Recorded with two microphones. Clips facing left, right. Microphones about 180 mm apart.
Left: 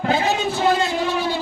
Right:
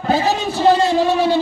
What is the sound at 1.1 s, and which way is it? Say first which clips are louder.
Speech: right 7 dB; 75° right (ahead or behind).